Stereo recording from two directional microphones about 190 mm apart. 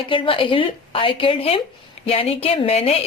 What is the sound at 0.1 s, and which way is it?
A woman's voice, 25° left (ahead or behind).